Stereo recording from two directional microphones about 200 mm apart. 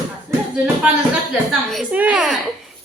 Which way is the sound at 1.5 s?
Centre (ahead or behind).